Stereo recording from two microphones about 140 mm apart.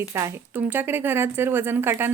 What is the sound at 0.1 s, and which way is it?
Speech, 20° right (ahead or behind).